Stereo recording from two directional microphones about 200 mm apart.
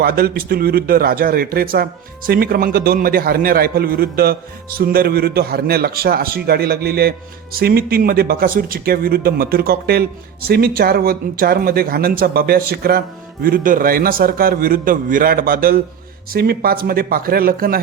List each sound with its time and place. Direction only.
0.0 s speech: 50° right (ahead or behind)